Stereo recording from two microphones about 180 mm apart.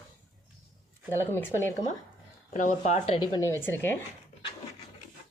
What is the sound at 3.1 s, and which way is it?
Speech, 20° left (ahead or behind).